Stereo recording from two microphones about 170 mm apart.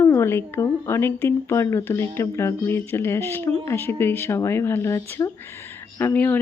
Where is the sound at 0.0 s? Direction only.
15° left (ahead or behind).